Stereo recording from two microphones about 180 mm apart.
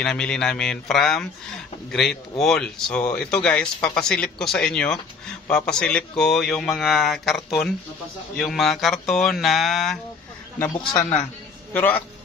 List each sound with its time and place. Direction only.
0.0 s speech: 5° left (ahead or behind)
10.8 s a man's voice: 25° left (ahead or behind)
11.7 s a man's voice: 10° left (ahead or behind)